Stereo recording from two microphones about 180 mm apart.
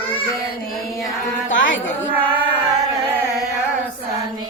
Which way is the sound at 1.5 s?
90° left.